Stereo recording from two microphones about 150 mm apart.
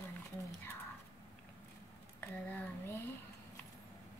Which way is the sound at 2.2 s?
10° left (ahead or behind).